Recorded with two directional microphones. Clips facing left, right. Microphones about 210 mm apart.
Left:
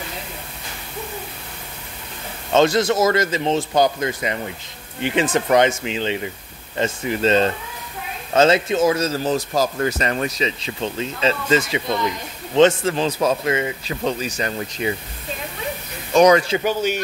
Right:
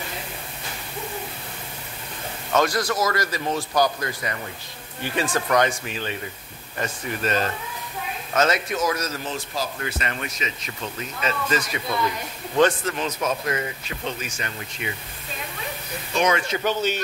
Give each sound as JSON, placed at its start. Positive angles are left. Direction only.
{"t": 2.5, "sound": "a man's voice", "side_deg": 25}
{"t": 16.1, "sound": "speech", "side_deg": 40}
{"t": 16.5, "sound": "a man's voice", "side_deg": 15}